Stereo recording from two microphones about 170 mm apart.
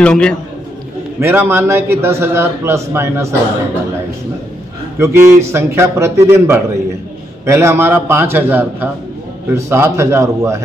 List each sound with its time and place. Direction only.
0.0 s a man's voice: 5° left (ahead or behind)
1.2 s a man's voice: 10° right (ahead or behind)
4.9 s a man's voice: 15° right (ahead or behind)